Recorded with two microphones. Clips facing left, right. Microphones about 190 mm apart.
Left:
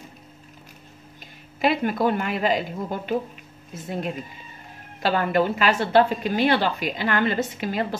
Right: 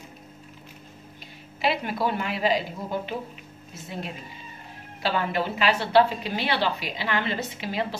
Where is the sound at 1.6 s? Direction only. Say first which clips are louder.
Left 5 dB; 50° left (ahead or behind).